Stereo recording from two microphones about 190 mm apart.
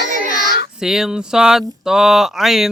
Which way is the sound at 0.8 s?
Centre (ahead or behind).